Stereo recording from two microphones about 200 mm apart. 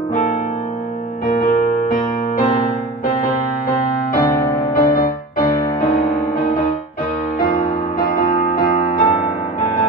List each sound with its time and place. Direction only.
1.2 s music: 40° left (ahead or behind)
4.2 s music: 20° left (ahead or behind)
8.5 s music: 40° left (ahead or behind)